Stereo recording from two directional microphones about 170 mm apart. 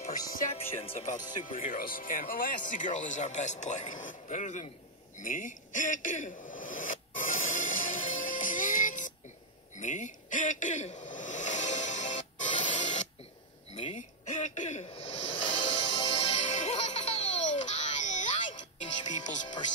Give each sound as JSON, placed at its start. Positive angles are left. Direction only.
{"t": 0.5, "sound": "speech", "side_deg": 40}
{"t": 1.5, "sound": "speech", "side_deg": 55}
{"t": 5.1, "sound": "a sound", "side_deg": 50}
{"t": 15.6, "sound": "music", "side_deg": 25}
{"t": 16.3, "sound": "music", "side_deg": 45}